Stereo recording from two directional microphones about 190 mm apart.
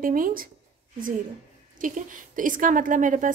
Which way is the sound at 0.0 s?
45° right (ahead or behind).